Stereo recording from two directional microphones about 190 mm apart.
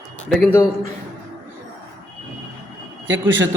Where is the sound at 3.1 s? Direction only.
85° right.